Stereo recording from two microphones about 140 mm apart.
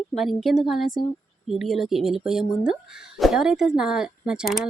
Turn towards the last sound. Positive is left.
turn(degrees=0)  # may be behind; listen again after turning